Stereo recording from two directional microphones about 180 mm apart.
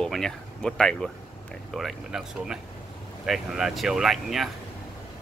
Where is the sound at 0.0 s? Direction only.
5° left (ahead or behind).